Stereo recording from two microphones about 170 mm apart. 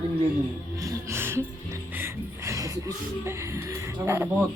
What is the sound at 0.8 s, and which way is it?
Music, 15° right (ahead or behind).